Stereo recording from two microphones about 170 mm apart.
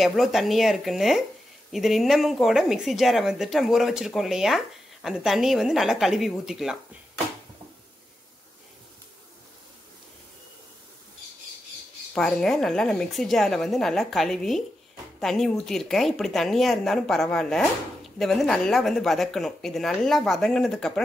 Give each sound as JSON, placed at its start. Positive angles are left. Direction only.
{"t": 0.0, "sound": "speech", "side_deg": 0}
{"t": 12.1, "sound": "speech", "side_deg": 5}